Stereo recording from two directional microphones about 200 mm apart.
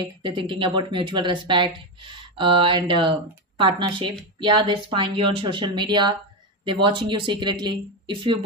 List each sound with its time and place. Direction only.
0.0 s speech: 25° right (ahead or behind)